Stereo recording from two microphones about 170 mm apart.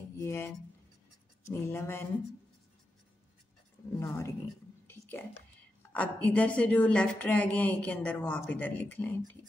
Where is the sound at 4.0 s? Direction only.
15° left (ahead or behind).